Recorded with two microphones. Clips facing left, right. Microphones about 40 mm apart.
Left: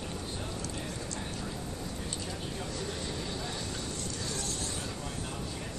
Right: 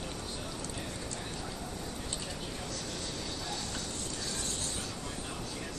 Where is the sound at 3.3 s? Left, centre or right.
Centre.